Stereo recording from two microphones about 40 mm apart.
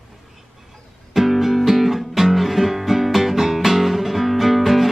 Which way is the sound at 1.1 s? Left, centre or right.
Centre.